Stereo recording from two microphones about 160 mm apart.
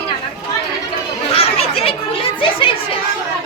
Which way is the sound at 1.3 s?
35° left (ahead or behind).